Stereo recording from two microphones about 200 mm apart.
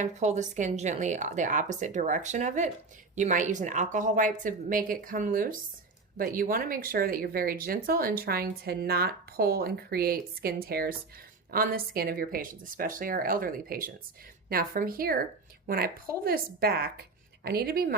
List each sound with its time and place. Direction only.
0.0 s a woman's voice: 35° right (ahead or behind)